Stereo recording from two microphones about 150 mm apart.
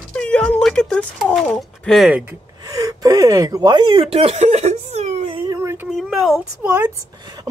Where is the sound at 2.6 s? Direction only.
25° right (ahead or behind); by 5.4 s 45° right (ahead or behind).